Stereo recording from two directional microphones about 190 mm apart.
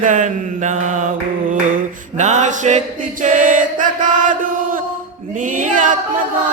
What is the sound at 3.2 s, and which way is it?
Chant, 45° right (ahead or behind).